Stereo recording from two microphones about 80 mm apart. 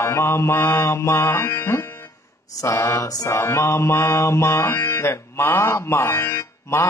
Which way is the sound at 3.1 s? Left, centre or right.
Left.